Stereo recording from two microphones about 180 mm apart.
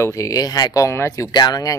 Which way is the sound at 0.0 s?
20° left (ahead or behind).